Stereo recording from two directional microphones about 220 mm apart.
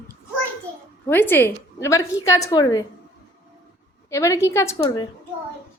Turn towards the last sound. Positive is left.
turn(degrees=15)  # may be behind; listen again after turning